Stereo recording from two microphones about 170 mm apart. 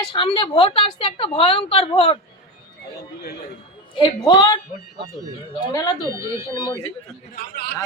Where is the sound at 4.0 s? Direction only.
25° left (ahead or behind).